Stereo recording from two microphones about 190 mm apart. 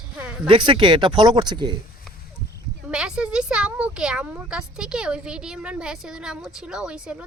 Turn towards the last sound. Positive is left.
turn(degrees=-5)  # may be behind; listen again after turning